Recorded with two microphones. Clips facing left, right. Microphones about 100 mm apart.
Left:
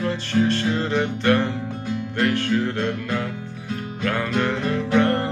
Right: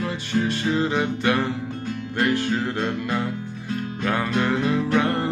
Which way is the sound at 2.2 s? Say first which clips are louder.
Left 1 dB; 15° right (ahead or behind).